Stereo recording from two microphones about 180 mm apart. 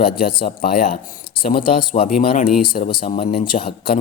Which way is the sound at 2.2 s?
55° left (ahead or behind).